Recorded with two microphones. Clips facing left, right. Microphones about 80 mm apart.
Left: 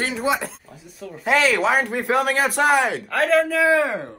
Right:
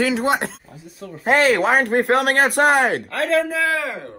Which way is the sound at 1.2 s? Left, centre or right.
Right.